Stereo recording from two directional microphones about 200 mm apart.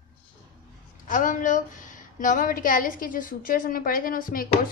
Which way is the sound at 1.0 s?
40° left (ahead or behind).